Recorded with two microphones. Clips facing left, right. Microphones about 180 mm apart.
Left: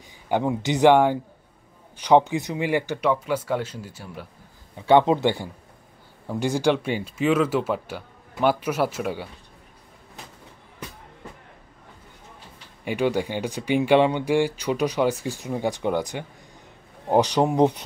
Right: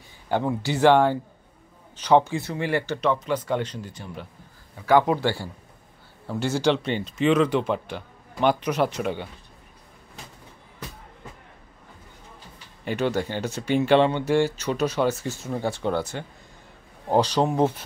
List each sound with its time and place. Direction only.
0.3 s speech: 15° left (ahead or behind)
4.8 s speech: 25° left (ahead or behind); by 9.3 s 5° left (ahead or behind)
12.8 s speech: 10° left (ahead or behind)